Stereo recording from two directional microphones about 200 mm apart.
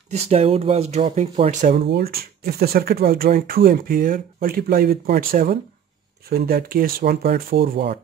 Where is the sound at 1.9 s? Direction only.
50° right (ahead or behind).